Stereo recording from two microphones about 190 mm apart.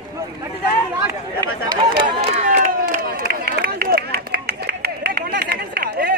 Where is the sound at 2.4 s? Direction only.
45° right (ahead or behind).